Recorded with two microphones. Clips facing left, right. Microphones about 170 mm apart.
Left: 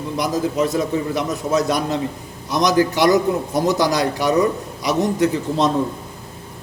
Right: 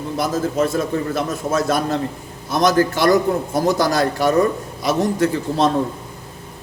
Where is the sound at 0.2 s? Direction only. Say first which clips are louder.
Even; 15° left (ahead or behind).